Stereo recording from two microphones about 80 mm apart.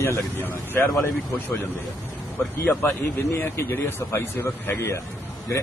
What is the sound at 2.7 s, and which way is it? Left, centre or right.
A man's voice, left.